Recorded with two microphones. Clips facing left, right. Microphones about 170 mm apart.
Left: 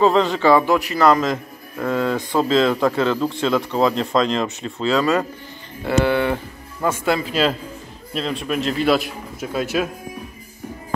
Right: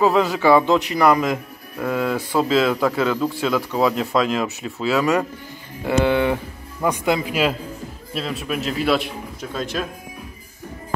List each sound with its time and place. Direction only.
0.0 s a man's voice: 5° right (ahead or behind)
5.9 s a man's voice: 15° right (ahead or behind); by 9.8 s 10° left (ahead or behind)